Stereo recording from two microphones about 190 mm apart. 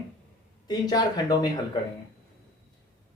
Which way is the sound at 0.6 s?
20° left (ahead or behind).